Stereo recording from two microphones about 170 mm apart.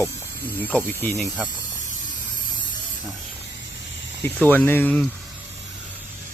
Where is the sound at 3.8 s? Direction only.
90° left.